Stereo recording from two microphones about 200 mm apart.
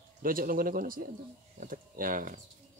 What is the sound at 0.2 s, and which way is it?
Speech, 45° right (ahead or behind).